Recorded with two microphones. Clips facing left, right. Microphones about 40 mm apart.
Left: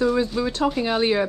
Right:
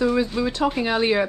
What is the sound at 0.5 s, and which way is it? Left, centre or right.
Speech, right.